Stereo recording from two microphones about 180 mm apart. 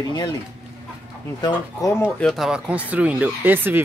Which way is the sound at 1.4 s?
20° left (ahead or behind).